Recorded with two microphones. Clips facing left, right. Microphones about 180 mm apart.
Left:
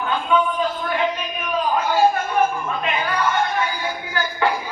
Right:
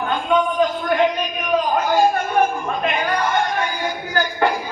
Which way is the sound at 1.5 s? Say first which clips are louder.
Right 2 dB; 40° right (ahead or behind).